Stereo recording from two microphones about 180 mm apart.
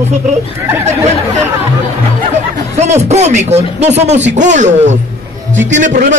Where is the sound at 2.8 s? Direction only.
40° right (ahead or behind).